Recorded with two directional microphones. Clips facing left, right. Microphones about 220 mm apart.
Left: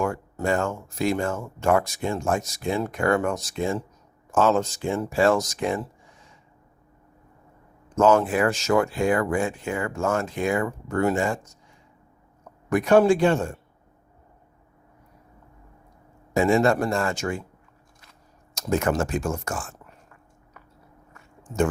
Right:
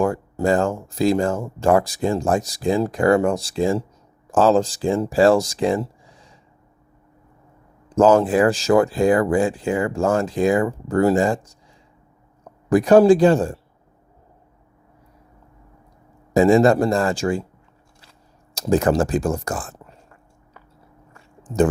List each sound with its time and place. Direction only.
0.0 s speech: 35° right (ahead or behind)
7.9 s speech: 35° right (ahead or behind)
12.7 s speech: 35° right (ahead or behind)
16.3 s speech: 35° right (ahead or behind)
18.5 s speech: 35° right (ahead or behind)
21.1 s a sound: 35° right (ahead or behind)